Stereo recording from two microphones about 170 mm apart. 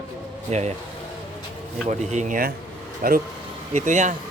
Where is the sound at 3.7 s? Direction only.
45° right (ahead or behind).